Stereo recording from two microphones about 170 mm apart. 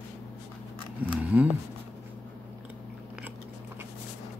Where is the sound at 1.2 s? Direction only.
10° right (ahead or behind).